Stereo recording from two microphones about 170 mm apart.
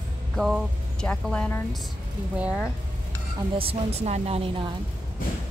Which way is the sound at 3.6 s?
40° right (ahead or behind).